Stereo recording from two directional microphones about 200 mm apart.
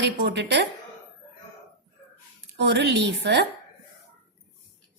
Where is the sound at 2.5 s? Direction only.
60° right (ahead or behind).